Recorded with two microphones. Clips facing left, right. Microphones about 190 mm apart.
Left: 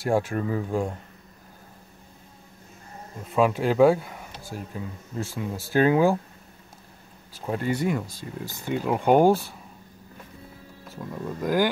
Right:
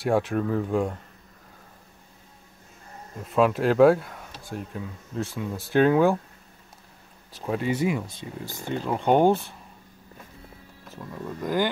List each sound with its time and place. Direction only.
0.0 s speech: centre (ahead or behind)
3.3 s speech: centre (ahead or behind)
7.3 s speech: centre (ahead or behind)
8.6 s speech: 10° left (ahead or behind)
11.0 s speech: 5° left (ahead or behind)